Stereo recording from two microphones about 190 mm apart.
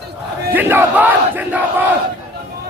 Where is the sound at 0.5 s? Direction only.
10° right (ahead or behind).